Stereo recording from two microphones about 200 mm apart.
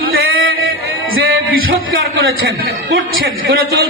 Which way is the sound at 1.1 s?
90° right.